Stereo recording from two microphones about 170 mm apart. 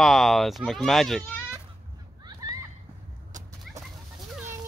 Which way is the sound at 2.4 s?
20° right (ahead or behind).